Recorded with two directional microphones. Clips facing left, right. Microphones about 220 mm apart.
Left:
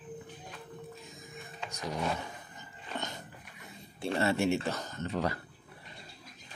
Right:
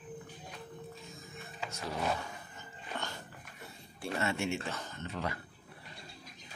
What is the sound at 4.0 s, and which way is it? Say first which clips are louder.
Speech: left 5 dB; 30° left (ahead or behind).